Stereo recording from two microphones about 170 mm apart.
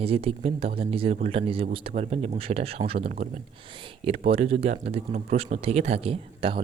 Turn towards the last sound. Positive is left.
turn(degrees=-35)  # may be behind; listen again after turning